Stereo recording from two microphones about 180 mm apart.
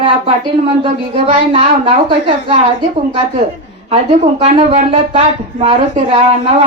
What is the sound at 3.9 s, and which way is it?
Speech, 30° right (ahead or behind).